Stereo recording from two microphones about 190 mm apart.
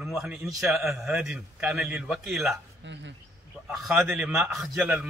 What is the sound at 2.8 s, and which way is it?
Speech, 70° right (ahead or behind).